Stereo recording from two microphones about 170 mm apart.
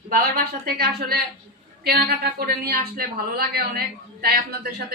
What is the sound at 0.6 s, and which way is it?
A woman's voice, 65° right (ahead or behind).